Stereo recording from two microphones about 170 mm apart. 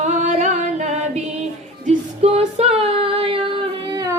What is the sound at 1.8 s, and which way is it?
Female singing, 40° right (ahead or behind).